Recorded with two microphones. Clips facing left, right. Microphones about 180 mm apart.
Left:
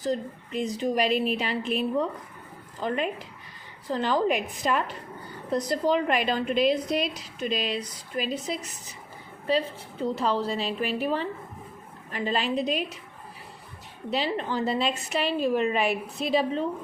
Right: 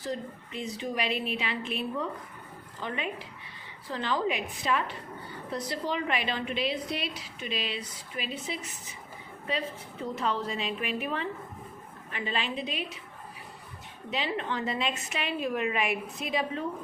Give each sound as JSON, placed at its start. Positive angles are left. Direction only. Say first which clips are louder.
{"t": 0.0, "sound": "a woman's voice", "louder": "left 6 dB", "side_deg": 40}
{"t": 2.8, "sound": "a woman's voice", "louder": "left 6 dB", "side_deg": 40}
{"t": 14.1, "sound": "a woman's voice", "louder": "left 4 dB", "side_deg": 35}